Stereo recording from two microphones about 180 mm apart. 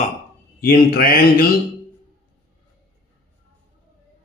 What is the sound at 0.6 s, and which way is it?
Speech, 55° left (ahead or behind).